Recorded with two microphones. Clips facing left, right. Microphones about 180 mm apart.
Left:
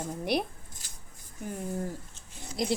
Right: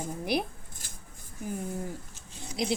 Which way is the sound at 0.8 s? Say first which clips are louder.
Right 4 dB; 55° right (ahead or behind).